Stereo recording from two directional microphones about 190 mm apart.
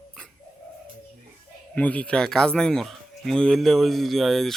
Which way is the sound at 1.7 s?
5° left (ahead or behind).